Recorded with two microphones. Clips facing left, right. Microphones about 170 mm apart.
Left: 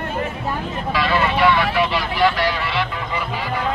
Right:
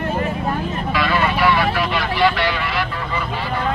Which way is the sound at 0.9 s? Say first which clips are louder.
Left 1 dB; 30° left (ahead or behind).